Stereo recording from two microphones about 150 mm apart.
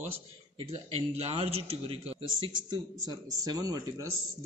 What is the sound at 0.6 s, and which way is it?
A man's voice, 40° right (ahead or behind).